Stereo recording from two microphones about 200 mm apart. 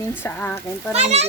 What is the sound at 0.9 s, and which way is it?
Speech, 35° right (ahead or behind).